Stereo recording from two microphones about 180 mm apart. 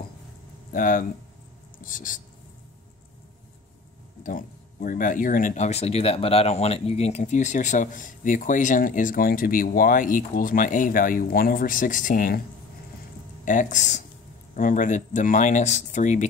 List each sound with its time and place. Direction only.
0.7 s speech: 50° left (ahead or behind)
4.2 s speech: 50° left (ahead or behind)
13.5 s speech: 45° left (ahead or behind)